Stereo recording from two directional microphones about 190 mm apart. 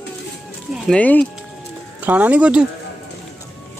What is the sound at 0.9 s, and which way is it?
Speech, 5° left (ahead or behind).